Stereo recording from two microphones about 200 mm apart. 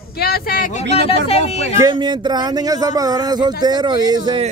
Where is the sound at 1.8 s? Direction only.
20° right (ahead or behind).